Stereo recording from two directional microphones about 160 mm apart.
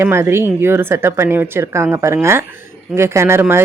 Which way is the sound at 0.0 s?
15° right (ahead or behind).